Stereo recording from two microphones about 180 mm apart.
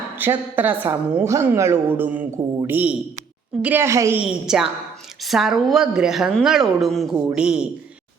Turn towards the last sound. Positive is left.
turn(degrees=-5)  # may be behind; listen again after turning